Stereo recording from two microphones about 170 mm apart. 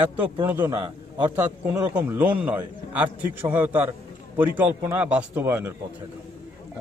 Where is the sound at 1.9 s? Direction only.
5° right (ahead or behind).